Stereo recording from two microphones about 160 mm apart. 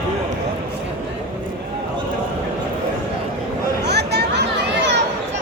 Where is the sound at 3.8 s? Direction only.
90° right.